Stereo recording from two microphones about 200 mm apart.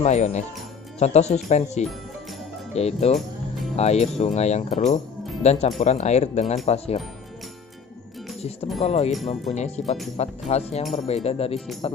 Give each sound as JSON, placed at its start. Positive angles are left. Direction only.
{"t": 0.0, "sound": "speech", "side_deg": 35}
{"t": 8.8, "sound": "speech", "side_deg": 30}